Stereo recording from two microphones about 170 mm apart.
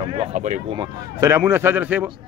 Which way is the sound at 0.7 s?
20° right (ahead or behind).